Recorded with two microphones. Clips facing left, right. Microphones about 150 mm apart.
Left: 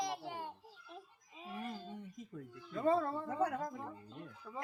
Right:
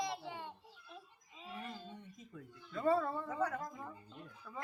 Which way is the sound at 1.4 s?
40° left (ahead or behind).